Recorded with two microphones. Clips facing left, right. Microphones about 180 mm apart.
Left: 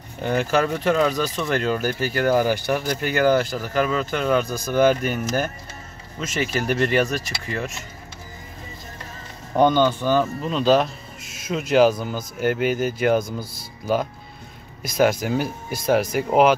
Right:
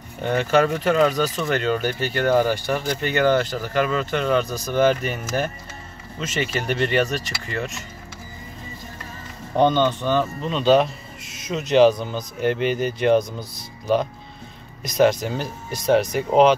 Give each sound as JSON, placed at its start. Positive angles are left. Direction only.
{"t": 0.2, "sound": "speech", "side_deg": 5}
{"t": 9.6, "sound": "speech", "side_deg": 5}